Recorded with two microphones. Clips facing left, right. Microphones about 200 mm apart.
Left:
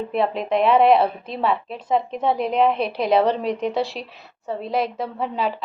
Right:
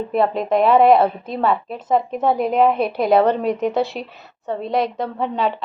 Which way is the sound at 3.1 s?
50° right (ahead or behind).